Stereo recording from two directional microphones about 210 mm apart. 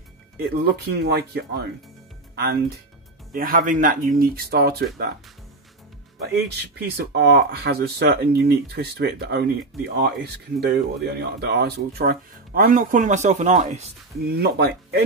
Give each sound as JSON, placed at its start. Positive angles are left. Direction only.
{"t": 0.4, "sound": "speech", "side_deg": -50}
{"t": 6.3, "sound": "speech", "side_deg": -50}